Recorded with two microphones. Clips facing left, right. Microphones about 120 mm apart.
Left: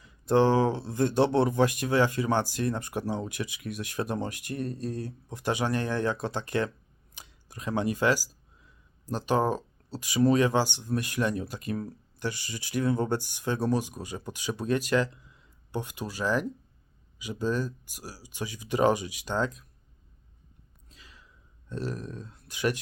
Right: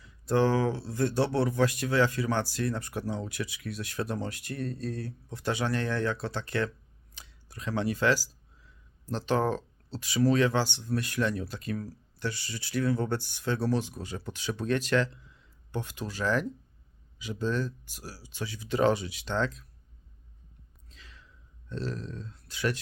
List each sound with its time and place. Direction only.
0.0 s speech: 20° left (ahead or behind)
20.9 s sigh: 10° left (ahead or behind)
21.7 s speech: 15° left (ahead or behind)